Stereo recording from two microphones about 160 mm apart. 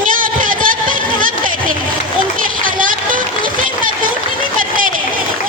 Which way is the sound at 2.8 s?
60° right (ahead or behind).